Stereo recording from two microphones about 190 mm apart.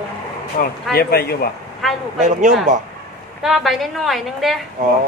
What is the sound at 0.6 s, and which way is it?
Speech, 55° left (ahead or behind).